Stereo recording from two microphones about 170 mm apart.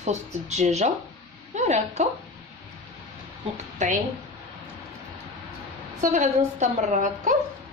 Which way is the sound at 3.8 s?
45° right (ahead or behind).